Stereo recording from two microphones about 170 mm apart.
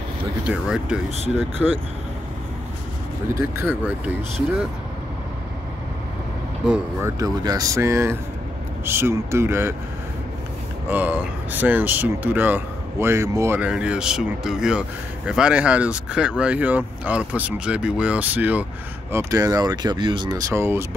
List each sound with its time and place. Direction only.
0.5 s speech: 5° right (ahead or behind)
3.3 s speech: 15° right (ahead or behind)
6.7 s speech: 15° right (ahead or behind)
10.9 s speech: 10° right (ahead or behind)
19.1 s speech: 20° right (ahead or behind)